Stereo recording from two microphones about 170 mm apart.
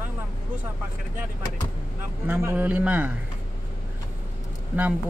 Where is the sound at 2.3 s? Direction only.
15° right (ahead or behind).